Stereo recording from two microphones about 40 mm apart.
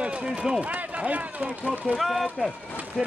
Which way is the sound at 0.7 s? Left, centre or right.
Right.